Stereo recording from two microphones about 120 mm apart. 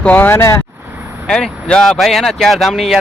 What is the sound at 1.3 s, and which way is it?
Speech, 5° left (ahead or behind).